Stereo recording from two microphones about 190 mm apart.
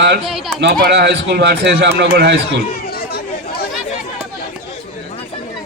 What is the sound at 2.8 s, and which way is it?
Chatter, 55° left (ahead or behind).